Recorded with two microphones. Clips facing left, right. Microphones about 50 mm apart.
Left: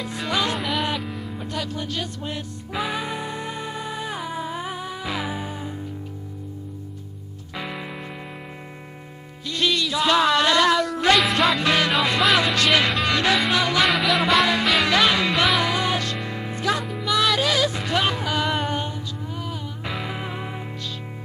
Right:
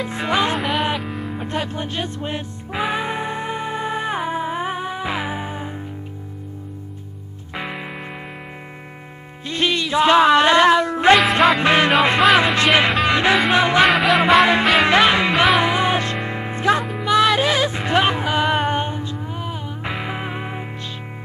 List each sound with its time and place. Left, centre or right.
0.0 s music: right
0.6 s music: centre
1.4 s music: right
7.5 s music: right
9.5 s music: right
13.8 s music: centre
14.4 s music: right